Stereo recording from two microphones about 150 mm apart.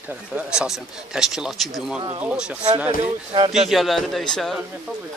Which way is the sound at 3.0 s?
45° right (ahead or behind).